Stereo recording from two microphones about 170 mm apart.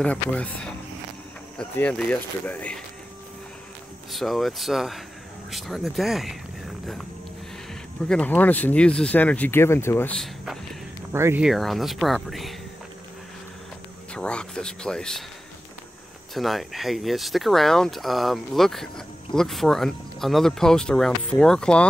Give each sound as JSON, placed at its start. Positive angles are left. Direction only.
{"t": 0.0, "sound": "speech", "side_deg": 5}
{"t": 4.1, "sound": "speech", "side_deg": 0}
{"t": 8.1, "sound": "speech", "side_deg": 10}
{"t": 11.1, "sound": "speech", "side_deg": -15}
{"t": 11.4, "sound": "speech", "side_deg": 0}
{"t": 14.1, "sound": "speech", "side_deg": 5}
{"t": 16.3, "sound": "speech", "side_deg": 0}